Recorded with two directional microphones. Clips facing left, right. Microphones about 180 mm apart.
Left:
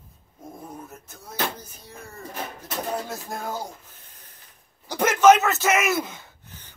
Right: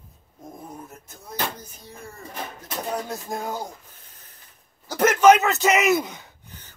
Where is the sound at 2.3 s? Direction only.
Centre (ahead or behind).